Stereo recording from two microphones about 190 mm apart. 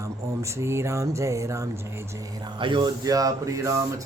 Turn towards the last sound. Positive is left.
turn(degrees=-15)  # may be behind; listen again after turning